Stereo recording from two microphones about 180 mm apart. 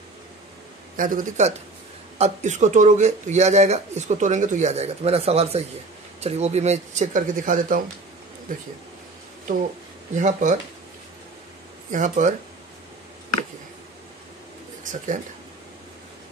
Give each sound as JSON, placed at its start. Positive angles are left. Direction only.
{"t": 0.9, "sound": "speech", "side_deg": -50}
{"t": 10.1, "sound": "speech", "side_deg": -45}
{"t": 11.9, "sound": "speech", "side_deg": -45}
{"t": 14.8, "sound": "speech", "side_deg": -45}